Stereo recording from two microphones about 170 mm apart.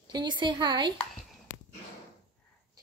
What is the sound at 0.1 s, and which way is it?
Speech, 25° right (ahead or behind).